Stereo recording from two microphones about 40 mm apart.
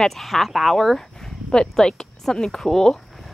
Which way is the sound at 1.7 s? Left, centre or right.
Centre.